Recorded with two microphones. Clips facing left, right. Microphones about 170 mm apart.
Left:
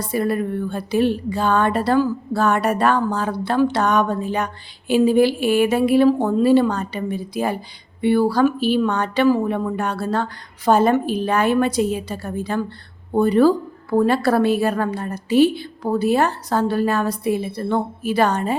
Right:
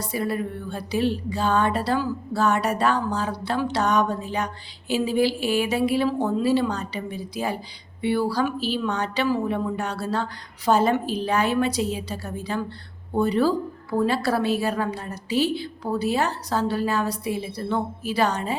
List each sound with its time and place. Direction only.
0.0 s a woman's voice: 55° left (ahead or behind)